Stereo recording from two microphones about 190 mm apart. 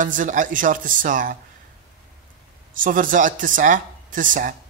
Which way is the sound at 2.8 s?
45° right (ahead or behind).